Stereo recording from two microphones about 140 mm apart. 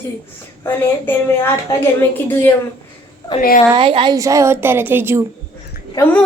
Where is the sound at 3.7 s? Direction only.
40° right (ahead or behind).